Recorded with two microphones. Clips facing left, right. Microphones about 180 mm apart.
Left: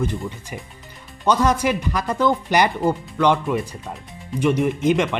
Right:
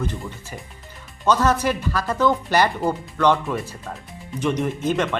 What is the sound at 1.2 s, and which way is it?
Speech, 10° left (ahead or behind).